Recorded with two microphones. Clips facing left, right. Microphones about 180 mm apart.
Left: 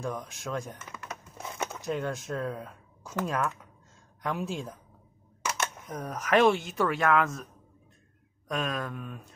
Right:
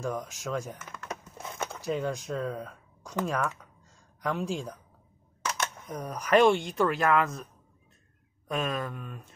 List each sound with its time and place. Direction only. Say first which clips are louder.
0.0 s speech: right 2 dB; centre (ahead or behind)
8.5 s speech: right 1 dB; centre (ahead or behind)